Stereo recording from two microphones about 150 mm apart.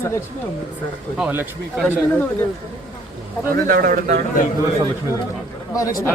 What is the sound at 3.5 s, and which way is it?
Speech, 70° right (ahead or behind).